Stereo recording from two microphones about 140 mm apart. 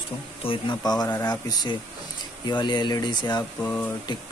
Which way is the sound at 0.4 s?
35° left (ahead or behind).